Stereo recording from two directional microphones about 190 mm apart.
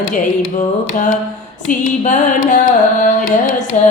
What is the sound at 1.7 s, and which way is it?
Carnatic music, 40° left (ahead or behind).